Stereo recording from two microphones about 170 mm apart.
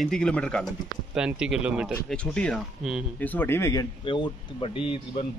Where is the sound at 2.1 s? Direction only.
5° left (ahead or behind).